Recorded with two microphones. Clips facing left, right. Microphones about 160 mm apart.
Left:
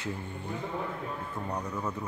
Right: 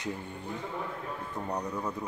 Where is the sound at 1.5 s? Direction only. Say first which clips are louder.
Right 1 dB; 15° right (ahead or behind).